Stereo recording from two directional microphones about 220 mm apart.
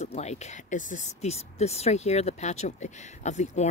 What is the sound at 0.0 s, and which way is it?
Speech, 30° left (ahead or behind).